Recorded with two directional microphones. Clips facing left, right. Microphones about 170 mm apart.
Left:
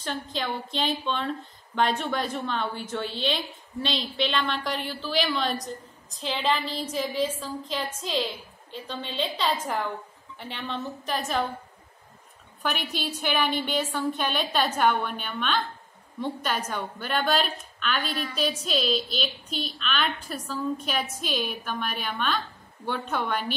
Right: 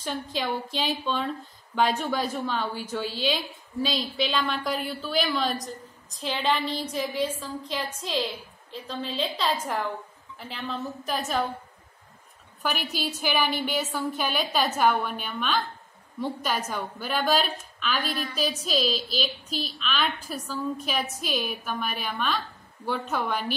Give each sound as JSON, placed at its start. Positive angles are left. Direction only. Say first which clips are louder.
{"t": 0.0, "sound": "a woman's voice", "louder": "right 1 dB", "side_deg": -5}
{"t": 12.6, "sound": "a woman's voice", "louder": "even", "side_deg": -5}